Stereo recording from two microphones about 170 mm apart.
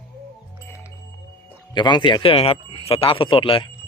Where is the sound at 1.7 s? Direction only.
25° left (ahead or behind).